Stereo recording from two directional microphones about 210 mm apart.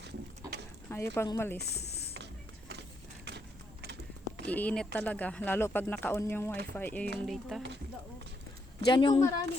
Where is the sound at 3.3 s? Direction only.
55° right (ahead or behind).